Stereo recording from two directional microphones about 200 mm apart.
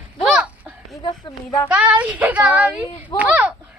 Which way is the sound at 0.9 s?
25° left (ahead or behind).